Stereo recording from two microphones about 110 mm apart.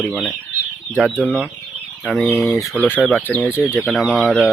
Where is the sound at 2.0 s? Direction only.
5° left (ahead or behind).